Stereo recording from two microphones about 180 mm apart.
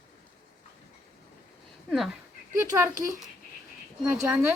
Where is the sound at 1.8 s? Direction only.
Centre (ahead or behind).